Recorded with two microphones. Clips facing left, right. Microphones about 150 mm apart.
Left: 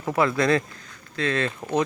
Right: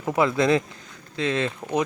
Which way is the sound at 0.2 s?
20° right (ahead or behind).